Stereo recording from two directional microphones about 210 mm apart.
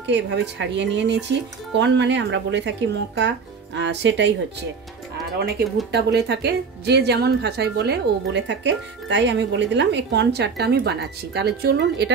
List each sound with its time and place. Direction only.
0.0 s speech: 55° right (ahead or behind)
5.9 s a woman's voice: 55° right (ahead or behind)